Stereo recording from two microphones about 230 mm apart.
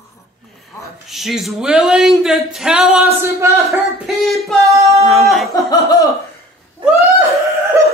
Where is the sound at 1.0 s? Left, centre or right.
Centre.